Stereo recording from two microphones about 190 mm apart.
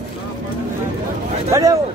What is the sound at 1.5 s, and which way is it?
Speech, 20° right (ahead or behind).